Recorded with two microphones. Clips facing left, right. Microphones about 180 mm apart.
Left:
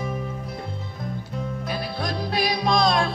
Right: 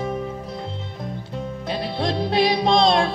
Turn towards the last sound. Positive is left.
turn(degrees=-25)  # may be behind; listen again after turning